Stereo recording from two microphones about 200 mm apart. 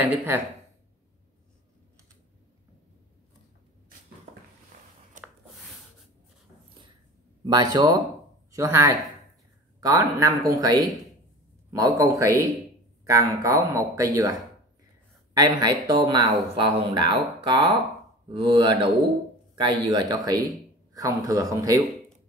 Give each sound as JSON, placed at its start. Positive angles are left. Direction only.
{"t": 0.0, "sound": "speech", "side_deg": -10}
{"t": 4.7, "sound": "a sound", "side_deg": -45}
{"t": 7.4, "sound": "a man's voice", "side_deg": -20}